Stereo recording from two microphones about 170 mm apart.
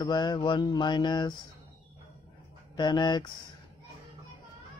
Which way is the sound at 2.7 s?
25° left (ahead or behind).